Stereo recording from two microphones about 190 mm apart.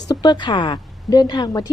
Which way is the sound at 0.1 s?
20° left (ahead or behind).